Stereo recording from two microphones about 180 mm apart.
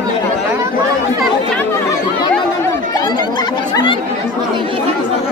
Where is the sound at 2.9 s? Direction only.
20° left (ahead or behind).